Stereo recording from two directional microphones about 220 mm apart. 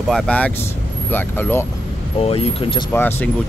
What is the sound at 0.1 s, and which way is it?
Speech, 5° left (ahead or behind).